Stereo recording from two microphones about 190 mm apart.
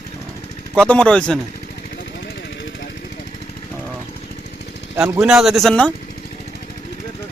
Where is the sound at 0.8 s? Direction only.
5° left (ahead or behind).